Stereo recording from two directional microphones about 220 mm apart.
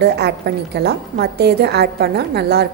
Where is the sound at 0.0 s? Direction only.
50° right (ahead or behind).